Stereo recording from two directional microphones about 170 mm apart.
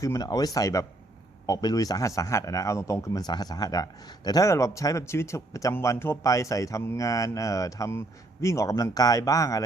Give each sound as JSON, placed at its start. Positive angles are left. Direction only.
{"t": 0.0, "sound": "a man's voice", "side_deg": 20}